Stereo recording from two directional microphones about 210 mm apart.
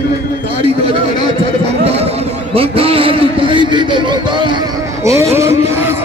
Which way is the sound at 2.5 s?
25° right (ahead or behind).